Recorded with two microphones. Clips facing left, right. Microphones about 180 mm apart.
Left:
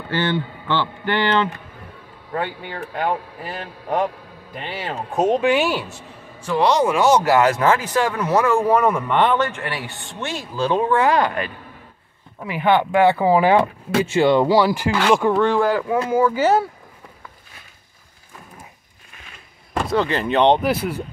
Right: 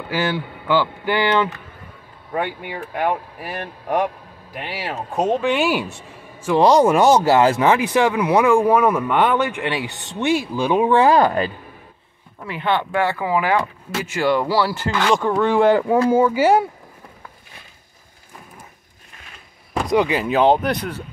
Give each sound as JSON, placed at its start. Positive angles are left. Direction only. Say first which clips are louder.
{"t": 0.1, "sound": "speech", "louder": "left 1 dB", "side_deg": -10}
{"t": 5.2, "sound": "speech", "louder": "left 1 dB", "side_deg": 5}
{"t": 6.6, "sound": "speech", "louder": "right 3 dB", "side_deg": -40}
{"t": 7.2, "sound": "speech", "louder": "right 1 dB", "side_deg": -25}
{"t": 10.9, "sound": "speech", "louder": "right 3 dB", "side_deg": -30}
{"t": 12.4, "sound": "speech", "louder": "left 4 dB", "side_deg": 15}
{"t": 15.6, "sound": "speech", "louder": "right 5 dB", "side_deg": -30}
{"t": 16.3, "sound": "speech", "louder": "right 2 dB", "side_deg": -10}
{"t": 19.9, "sound": "speech", "louder": "right 2 dB", "side_deg": -10}